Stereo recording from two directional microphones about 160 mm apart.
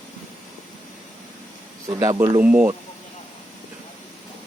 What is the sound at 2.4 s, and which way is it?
Speech, 10° right (ahead or behind).